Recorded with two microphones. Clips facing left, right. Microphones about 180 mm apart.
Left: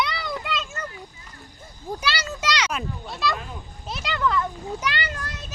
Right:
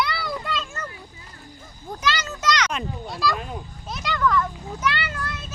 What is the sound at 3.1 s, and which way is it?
Speech, 20° left (ahead or behind).